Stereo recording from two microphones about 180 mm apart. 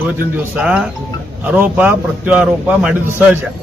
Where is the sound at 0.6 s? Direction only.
5° right (ahead or behind).